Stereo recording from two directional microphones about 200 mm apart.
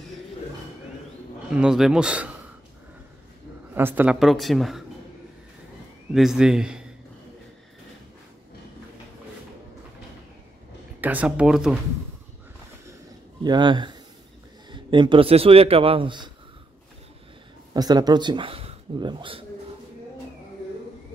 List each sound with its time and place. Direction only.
1.5 s speech: 5° right (ahead or behind)
3.7 s speech: 10° right (ahead or behind)
6.1 s speech: centre (ahead or behind)
11.0 s speech: 10° right (ahead or behind)
13.4 s speech: 20° right (ahead or behind)
17.7 s speech: 20° right (ahead or behind)